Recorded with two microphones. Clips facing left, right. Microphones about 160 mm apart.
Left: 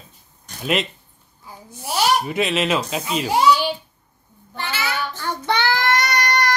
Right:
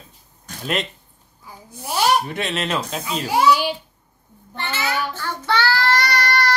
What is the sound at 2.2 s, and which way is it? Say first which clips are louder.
Speech: left 4 dB; 5° left (ahead or behind).